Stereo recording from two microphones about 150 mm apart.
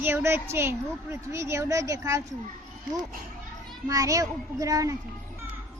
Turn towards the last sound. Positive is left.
turn(degrees=-20)  # may be behind; listen again after turning